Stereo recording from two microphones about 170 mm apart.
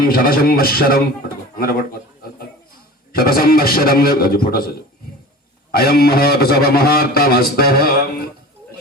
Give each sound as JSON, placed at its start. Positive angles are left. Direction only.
{"t": 0.0, "sound": "a man's voice", "side_deg": 60}
{"t": 3.1, "sound": "a man's voice", "side_deg": 60}
{"t": 5.7, "sound": "a man's voice", "side_deg": 65}